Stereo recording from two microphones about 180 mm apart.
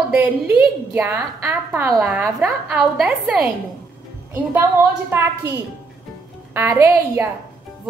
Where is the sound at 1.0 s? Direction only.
10° right (ahead or behind).